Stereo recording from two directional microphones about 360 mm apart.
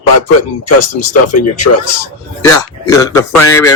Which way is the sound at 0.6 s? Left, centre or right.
Left.